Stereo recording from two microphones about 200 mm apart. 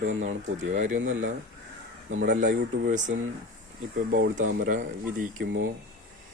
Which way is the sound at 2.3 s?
40° right (ahead or behind).